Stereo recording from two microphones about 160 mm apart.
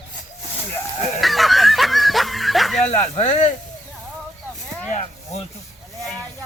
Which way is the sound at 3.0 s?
40° left (ahead or behind).